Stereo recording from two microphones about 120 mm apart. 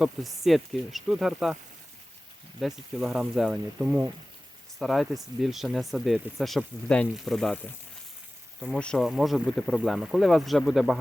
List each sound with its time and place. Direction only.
0.4 s speech: centre (ahead or behind)
2.6 s speech: 5° right (ahead or behind)
3.8 s speech: 15° right (ahead or behind)
4.8 s speech: centre (ahead or behind)
8.6 s speech: 5° left (ahead or behind)